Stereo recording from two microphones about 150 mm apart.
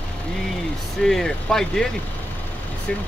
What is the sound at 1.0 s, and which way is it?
Speech, 5° left (ahead or behind).